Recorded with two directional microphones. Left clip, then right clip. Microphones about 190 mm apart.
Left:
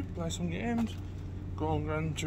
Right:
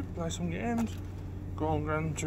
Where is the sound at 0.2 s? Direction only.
Centre (ahead or behind).